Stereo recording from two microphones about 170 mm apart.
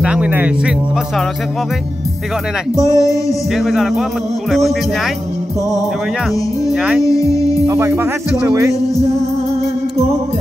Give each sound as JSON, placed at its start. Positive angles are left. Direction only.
{"t": 0.0, "sound": "speech", "side_deg": -5}
{"t": 2.7, "sound": "music", "side_deg": 20}
{"t": 3.5, "sound": "speech", "side_deg": 0}
{"t": 6.7, "sound": "speech", "side_deg": -5}
{"t": 7.6, "sound": "speech", "side_deg": -15}